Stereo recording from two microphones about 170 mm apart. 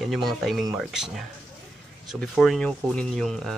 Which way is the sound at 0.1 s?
Centre (ahead or behind).